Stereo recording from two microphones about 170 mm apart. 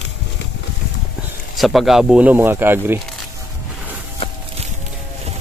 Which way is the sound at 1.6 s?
Centre (ahead or behind).